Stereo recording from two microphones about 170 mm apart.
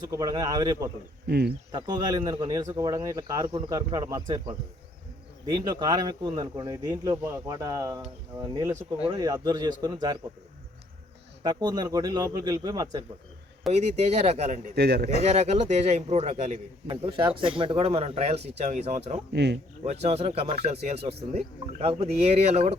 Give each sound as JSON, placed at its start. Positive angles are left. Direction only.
{"t": 0.1, "sound": "speech", "side_deg": -20}
{"t": 1.3, "sound": "a man's voice", "side_deg": -70}
{"t": 1.7, "sound": "speech", "side_deg": -25}
{"t": 9.0, "sound": "speech", "side_deg": -20}
{"t": 11.4, "sound": "speech", "side_deg": -25}
{"t": 13.7, "sound": "a man's voice", "side_deg": -40}
{"t": 14.8, "sound": "a man's voice", "side_deg": -70}
{"t": 15.2, "sound": "a man's voice", "side_deg": -40}
{"t": 19.3, "sound": "speech", "side_deg": -85}
{"t": 19.8, "sound": "a man's voice", "side_deg": -40}